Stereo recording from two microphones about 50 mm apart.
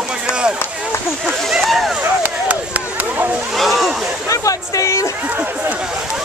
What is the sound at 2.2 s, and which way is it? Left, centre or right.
Chop, right.